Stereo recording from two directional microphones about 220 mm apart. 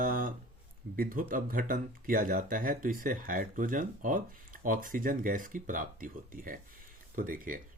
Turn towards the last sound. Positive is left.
turn(degrees=-40)  # may be behind; listen again after turning